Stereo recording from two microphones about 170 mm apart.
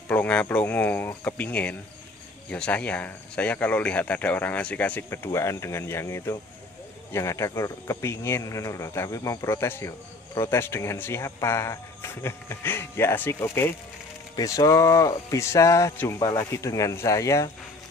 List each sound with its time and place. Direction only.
0.1 s speech: 10° left (ahead or behind)